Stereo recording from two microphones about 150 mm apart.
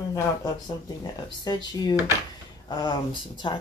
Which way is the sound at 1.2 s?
30° left (ahead or behind).